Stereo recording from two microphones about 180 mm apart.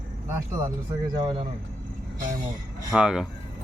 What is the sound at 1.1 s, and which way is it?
Speech, 30° right (ahead or behind).